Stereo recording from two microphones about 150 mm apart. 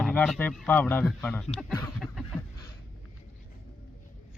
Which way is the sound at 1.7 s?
15° left (ahead or behind).